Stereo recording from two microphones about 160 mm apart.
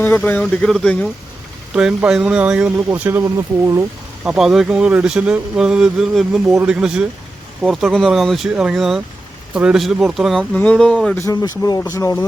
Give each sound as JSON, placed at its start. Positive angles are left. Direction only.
{"t": 0.0, "sound": "speech", "side_deg": 10}
{"t": 4.2, "sound": "speech", "side_deg": -5}
{"t": 11.3, "sound": "speech", "side_deg": 25}